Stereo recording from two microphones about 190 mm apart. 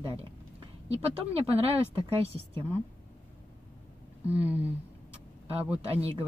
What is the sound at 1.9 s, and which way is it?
Speech, 30° right (ahead or behind).